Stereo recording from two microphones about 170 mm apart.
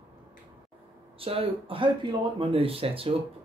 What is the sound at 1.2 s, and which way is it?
Speech, 35° right (ahead or behind).